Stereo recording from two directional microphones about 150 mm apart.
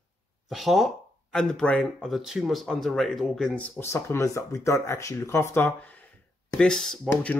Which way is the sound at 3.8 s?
15° left (ahead or behind).